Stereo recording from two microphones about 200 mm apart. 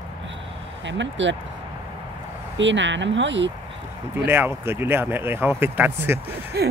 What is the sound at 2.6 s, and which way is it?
Speech, 65° right (ahead or behind).